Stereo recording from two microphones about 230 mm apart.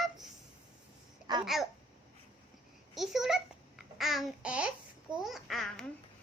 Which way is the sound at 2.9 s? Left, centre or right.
Centre.